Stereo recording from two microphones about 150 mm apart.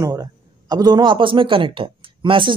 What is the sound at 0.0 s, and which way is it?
A man's voice, 25° right (ahead or behind).